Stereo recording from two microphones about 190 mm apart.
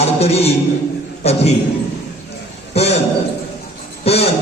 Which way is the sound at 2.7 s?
35° left (ahead or behind).